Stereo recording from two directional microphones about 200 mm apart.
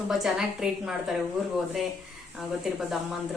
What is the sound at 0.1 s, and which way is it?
A woman's voice, centre (ahead or behind).